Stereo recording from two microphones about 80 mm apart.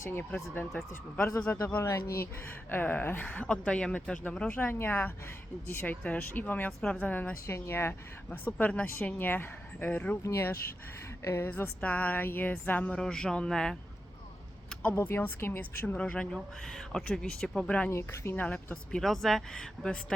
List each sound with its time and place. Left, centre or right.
0.0 s speech: left
1.2 s speech: left
2.2 s speech: left
7.4 s speech: left
10.2 s speech: left; by 13.7 s centre
15.0 s speech: left
16.0 s speech: centre
17.9 s speech: left
18.3 s speech: centre